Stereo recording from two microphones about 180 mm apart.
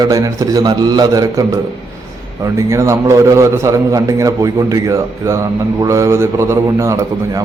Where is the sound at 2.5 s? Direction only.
15° right (ahead or behind).